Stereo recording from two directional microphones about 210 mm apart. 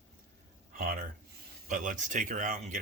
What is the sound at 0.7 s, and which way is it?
Speech, 40° right (ahead or behind).